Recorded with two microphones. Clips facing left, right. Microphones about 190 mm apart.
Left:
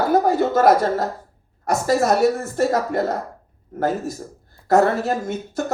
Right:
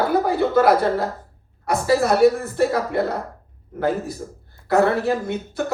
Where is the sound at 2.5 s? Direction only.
45° left (ahead or behind).